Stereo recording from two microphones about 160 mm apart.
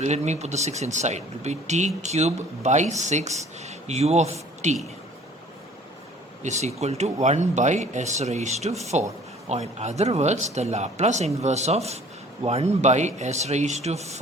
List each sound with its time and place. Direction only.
0.0 s speech: 45° right (ahead or behind)
6.4 s speech: 45° right (ahead or behind)